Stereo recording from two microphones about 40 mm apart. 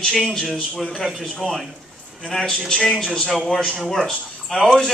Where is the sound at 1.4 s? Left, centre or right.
Centre.